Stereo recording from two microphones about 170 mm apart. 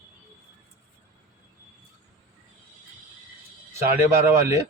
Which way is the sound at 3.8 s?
15° right (ahead or behind).